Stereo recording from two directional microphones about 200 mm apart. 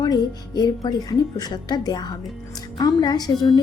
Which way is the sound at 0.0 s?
20° left (ahead or behind).